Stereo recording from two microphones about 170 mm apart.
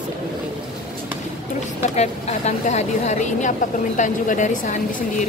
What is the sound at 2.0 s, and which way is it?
A woman's voice, 40° left (ahead or behind).